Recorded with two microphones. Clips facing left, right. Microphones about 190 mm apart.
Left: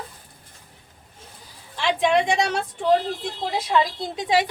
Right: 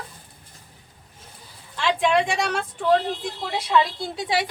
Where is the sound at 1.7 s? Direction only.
15° left (ahead or behind).